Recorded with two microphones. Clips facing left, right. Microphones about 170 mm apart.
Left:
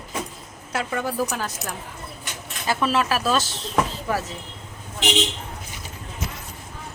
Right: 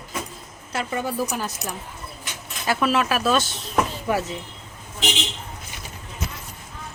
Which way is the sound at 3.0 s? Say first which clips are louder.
Even; 35° left (ahead or behind).